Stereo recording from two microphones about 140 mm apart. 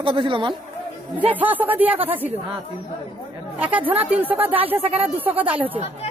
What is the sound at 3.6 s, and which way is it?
A woman's voice, 10° right (ahead or behind).